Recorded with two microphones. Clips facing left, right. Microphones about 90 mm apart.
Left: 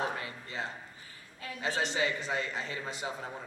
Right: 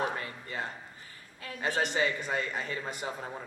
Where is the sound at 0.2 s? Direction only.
45° right (ahead or behind).